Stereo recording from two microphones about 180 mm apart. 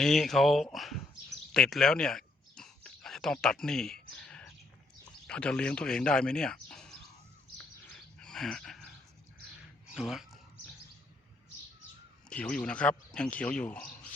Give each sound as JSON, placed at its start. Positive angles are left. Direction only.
{"t": 0.0, "sound": "speech", "side_deg": 0}
{"t": 1.5, "sound": "a sound", "side_deg": 5}
{"t": 5.2, "sound": "speech", "side_deg": 5}
{"t": 7.6, "sound": "bird", "side_deg": 5}
{"t": 9.9, "sound": "speech", "side_deg": -5}
{"t": 12.3, "sound": "speech", "side_deg": 5}